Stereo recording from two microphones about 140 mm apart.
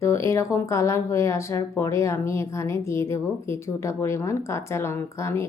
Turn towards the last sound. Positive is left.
turn(degrees=20)  # may be behind; listen again after turning